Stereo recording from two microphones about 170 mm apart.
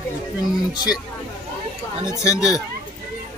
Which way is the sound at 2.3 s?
5° right (ahead or behind).